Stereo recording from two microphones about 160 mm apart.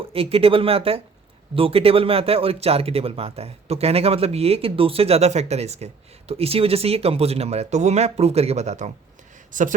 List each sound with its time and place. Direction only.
0.1 s speech: 35° right (ahead or behind); by 9.7 s 55° right (ahead or behind)